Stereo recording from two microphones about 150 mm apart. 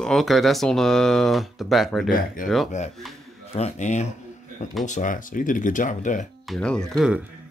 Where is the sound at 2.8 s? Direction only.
50° left (ahead or behind).